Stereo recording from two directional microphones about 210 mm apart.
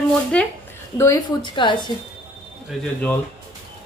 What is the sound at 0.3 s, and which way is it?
Speech, 5° left (ahead or behind).